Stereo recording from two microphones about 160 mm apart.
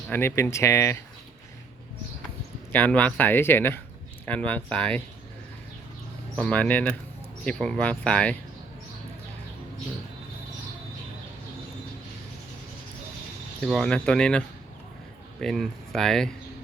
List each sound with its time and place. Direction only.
0.1 s speech: 15° left (ahead or behind)
2.7 s speech: 10° left (ahead or behind)
6.3 s speech: 10° left (ahead or behind)
13.6 s speech: centre (ahead or behind)